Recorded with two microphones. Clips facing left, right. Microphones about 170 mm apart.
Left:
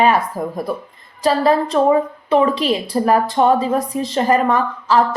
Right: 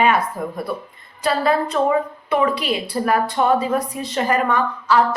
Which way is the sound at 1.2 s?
35° left (ahead or behind).